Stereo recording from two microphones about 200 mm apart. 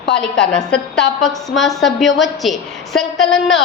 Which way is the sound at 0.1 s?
5° left (ahead or behind).